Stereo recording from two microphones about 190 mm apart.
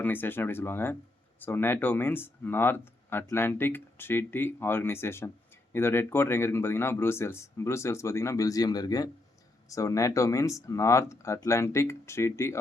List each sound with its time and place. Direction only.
0.0 s speech: 10° left (ahead or behind)